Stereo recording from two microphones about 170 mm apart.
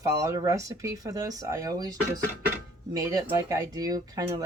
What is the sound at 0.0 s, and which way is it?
A woman's voice, 20° right (ahead or behind).